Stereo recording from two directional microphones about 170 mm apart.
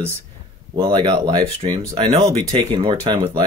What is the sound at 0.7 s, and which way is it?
Speech, 30° right (ahead or behind).